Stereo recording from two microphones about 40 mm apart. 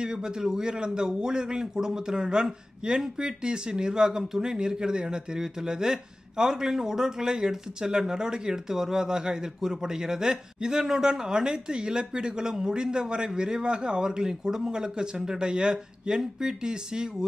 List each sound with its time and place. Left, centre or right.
0.0 s a man's voice: centre